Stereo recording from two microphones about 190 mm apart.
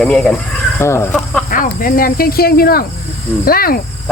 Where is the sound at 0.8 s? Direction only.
15° left (ahead or behind).